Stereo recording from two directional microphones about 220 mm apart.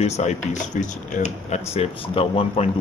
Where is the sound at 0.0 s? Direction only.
30° left (ahead or behind).